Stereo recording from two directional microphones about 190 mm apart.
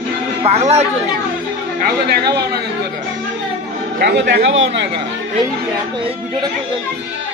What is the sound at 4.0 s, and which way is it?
Speech, 65° right (ahead or behind).